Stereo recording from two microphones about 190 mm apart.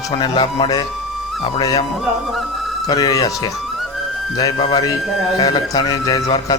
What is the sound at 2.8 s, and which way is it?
A man's voice, 20° left (ahead or behind).